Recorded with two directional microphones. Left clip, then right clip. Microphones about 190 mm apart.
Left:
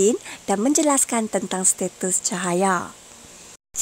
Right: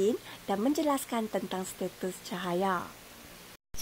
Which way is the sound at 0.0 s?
50° left (ahead or behind).